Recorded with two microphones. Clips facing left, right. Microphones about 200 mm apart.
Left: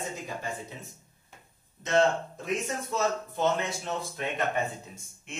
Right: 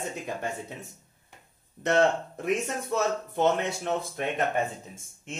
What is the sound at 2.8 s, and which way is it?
Speech, 60° right (ahead or behind).